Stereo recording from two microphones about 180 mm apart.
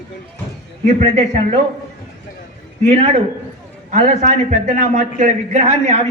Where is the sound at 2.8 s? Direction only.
35° right (ahead or behind).